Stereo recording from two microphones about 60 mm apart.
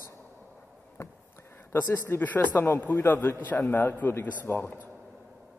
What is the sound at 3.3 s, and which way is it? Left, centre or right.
A man's voice, left.